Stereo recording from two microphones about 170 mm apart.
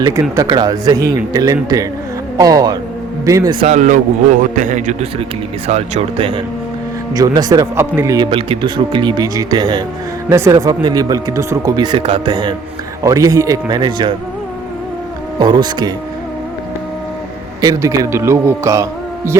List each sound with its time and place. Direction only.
0.0 s a man's voice: 20° right (ahead or behind)
3.7 s a man's voice: 45° right (ahead or behind)
7.1 s a man's voice: 20° right (ahead or behind)
15.4 s a man's voice: 25° right (ahead or behind)
17.6 s speech: 20° right (ahead or behind)